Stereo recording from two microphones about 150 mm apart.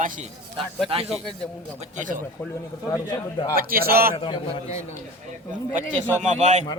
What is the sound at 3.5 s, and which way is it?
Speech, 75° right (ahead or behind).